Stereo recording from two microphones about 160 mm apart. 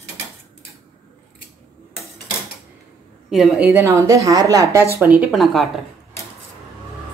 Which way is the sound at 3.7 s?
20° right (ahead or behind).